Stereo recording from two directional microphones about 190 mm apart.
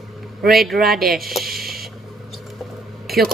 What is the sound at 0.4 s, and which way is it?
Speech, centre (ahead or behind).